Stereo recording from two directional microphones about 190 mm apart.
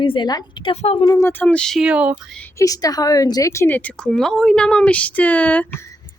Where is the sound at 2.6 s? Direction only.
20° left (ahead or behind).